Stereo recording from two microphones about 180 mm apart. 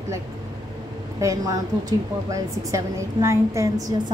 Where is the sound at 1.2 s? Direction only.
15° right (ahead or behind).